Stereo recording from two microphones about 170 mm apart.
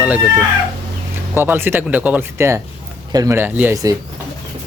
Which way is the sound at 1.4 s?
10° right (ahead or behind).